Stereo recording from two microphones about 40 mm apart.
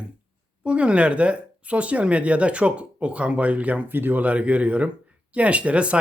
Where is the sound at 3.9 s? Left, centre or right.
Right.